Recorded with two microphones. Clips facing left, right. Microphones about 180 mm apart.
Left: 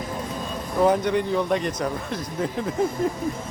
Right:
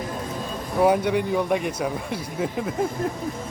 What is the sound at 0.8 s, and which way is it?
Speech, 10° right (ahead or behind).